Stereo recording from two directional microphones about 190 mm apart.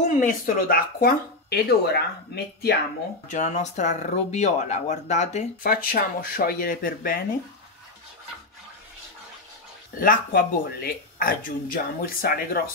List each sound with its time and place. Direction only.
0.0 s speech: 40° left (ahead or behind); by 2.7 s 60° left (ahead or behind)
3.3 s speech: 40° left (ahead or behind)
5.6 s speech: 50° left (ahead or behind)
9.9 s speech: 50° left (ahead or behind)